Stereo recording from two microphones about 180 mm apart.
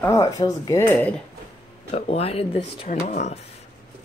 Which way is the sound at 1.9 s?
35° left (ahead or behind).